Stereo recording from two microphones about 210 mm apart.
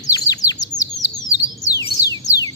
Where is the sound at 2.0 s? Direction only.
15° left (ahead or behind).